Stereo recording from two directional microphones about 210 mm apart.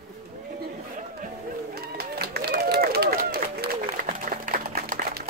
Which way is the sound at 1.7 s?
50° right (ahead or behind).